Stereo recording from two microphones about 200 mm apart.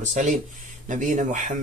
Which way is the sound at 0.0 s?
40° right (ahead or behind).